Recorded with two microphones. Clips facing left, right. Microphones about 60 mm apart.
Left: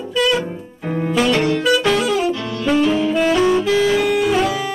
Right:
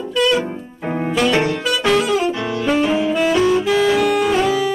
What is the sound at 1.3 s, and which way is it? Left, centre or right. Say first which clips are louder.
Saxophone: left 1 dB; right.